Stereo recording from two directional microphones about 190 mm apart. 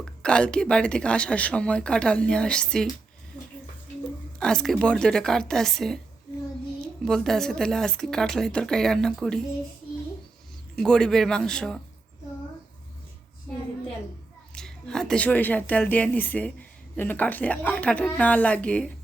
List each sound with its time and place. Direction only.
0.0 s speech: 5° left (ahead or behind)
4.4 s speech: 5° left (ahead or behind)
7.0 s speech: centre (ahead or behind)
10.8 s speech: 5° left (ahead or behind)
14.5 s a woman's voice: 5° left (ahead or behind)